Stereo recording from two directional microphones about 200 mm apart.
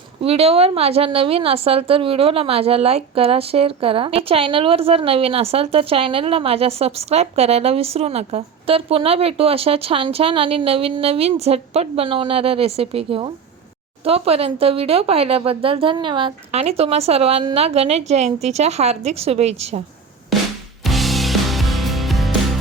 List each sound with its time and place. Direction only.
0.2 s a woman's voice: 30° right (ahead or behind)
20.8 s music: centre (ahead or behind)